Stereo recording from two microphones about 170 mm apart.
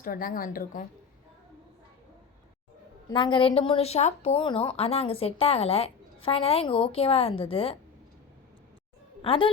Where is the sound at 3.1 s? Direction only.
30° left (ahead or behind).